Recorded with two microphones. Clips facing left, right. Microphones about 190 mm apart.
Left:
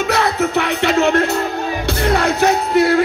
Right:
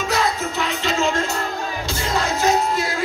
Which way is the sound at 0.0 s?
65° left (ahead or behind).